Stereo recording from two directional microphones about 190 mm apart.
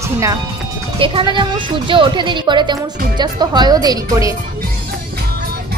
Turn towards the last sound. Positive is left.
turn(degrees=-20)  # may be behind; listen again after turning